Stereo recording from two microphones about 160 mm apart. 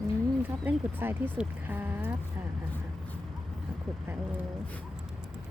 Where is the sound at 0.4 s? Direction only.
10° right (ahead or behind).